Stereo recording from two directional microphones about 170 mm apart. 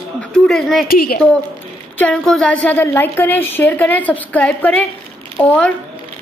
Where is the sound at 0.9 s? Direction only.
60° left (ahead or behind).